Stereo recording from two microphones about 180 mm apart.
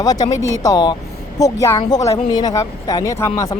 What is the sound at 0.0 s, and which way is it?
Speech, 20° left (ahead or behind).